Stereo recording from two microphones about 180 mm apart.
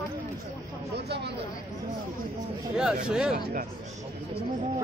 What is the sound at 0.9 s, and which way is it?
Speech, 65° right (ahead or behind).